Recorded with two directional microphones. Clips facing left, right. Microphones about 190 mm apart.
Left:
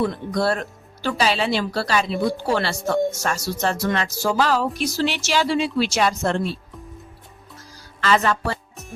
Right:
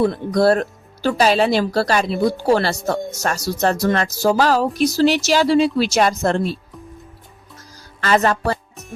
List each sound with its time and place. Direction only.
0.0 s speech: 40° right (ahead or behind)
8.0 s speech: 40° right (ahead or behind)
8.7 s music: centre (ahead or behind)